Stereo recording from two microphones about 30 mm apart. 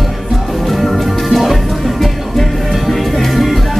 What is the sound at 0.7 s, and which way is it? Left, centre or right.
Music, centre.